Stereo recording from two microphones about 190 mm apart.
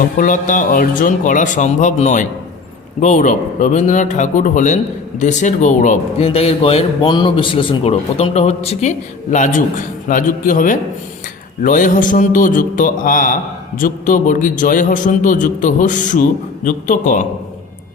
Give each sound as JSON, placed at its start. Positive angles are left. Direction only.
{"t": 0.2, "sound": "a man's voice", "side_deg": 45}